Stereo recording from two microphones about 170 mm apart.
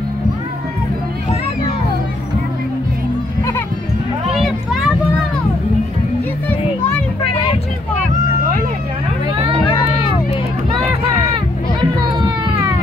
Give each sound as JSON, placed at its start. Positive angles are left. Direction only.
{"t": 4.3, "sound": "a sound", "side_deg": 0}
{"t": 10.8, "sound": "run", "side_deg": -35}
{"t": 12.0, "sound": "music", "side_deg": -25}